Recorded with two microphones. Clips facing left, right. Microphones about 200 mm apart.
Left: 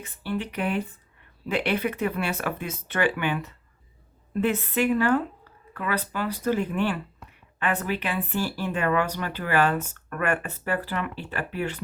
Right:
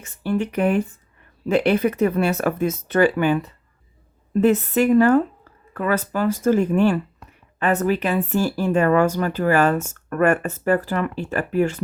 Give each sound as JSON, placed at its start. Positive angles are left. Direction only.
{"t": 0.0, "sound": "speech", "side_deg": -45}